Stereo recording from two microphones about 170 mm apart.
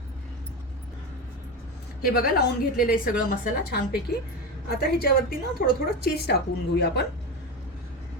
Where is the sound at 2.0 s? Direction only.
60° left (ahead or behind).